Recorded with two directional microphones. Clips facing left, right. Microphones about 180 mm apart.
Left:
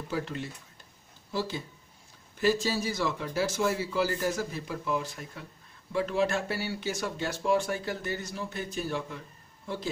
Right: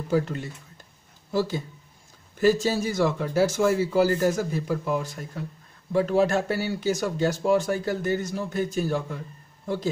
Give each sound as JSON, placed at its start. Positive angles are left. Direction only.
{"t": 0.1, "sound": "speech", "side_deg": -45}
{"t": 2.4, "sound": "speech", "side_deg": -45}